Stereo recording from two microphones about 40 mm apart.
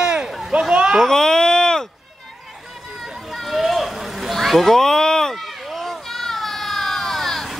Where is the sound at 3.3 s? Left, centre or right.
Centre.